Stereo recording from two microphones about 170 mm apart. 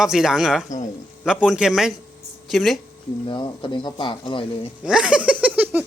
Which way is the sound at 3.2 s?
30° left (ahead or behind).